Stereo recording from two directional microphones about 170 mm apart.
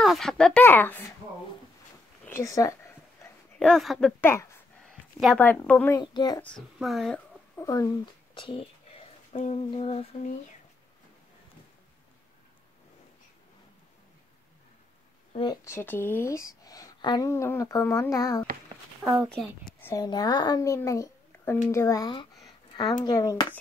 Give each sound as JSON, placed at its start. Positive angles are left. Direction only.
{"t": 0.0, "sound": "speech", "side_deg": 0}
{"t": 2.2, "sound": "speech", "side_deg": 15}
{"t": 3.2, "sound": "dog", "side_deg": 15}
{"t": 3.5, "sound": "a child's voice", "side_deg": 5}
{"t": 4.2, "sound": "speech", "side_deg": 15}
{"t": 4.8, "sound": "a sound", "side_deg": 0}
{"t": 5.7, "sound": "speech", "side_deg": 10}
{"t": 5.9, "sound": "speech", "side_deg": 25}
{"t": 6.4, "sound": "a child's voice", "side_deg": 0}
{"t": 7.5, "sound": "a sound", "side_deg": 20}
{"t": 9.7, "sound": "humming", "side_deg": 35}
{"t": 15.6, "sound": "speech", "side_deg": 15}
{"t": 19.2, "sound": "a child's voice", "side_deg": 5}
{"t": 19.9, "sound": "a child's voice", "side_deg": 20}